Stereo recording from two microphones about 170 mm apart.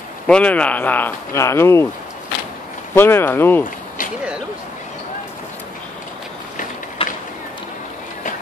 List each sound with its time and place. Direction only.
0.3 s speech: 5° left (ahead or behind)
2.9 s speech: 15° left (ahead or behind)
7.0 s a sound: 35° left (ahead or behind)